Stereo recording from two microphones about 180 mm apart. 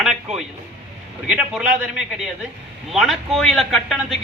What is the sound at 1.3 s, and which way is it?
A man's voice, 5° right (ahead or behind).